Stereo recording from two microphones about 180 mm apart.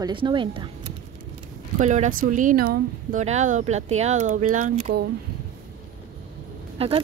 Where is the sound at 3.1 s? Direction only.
40° right (ahead or behind).